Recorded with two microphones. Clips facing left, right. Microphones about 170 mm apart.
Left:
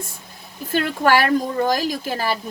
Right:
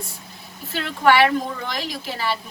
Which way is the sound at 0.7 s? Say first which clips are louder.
Left 1 dB; 45° left (ahead or behind).